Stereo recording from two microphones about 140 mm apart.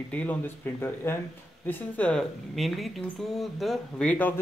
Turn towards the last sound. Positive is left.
turn(degrees=10)  # may be behind; listen again after turning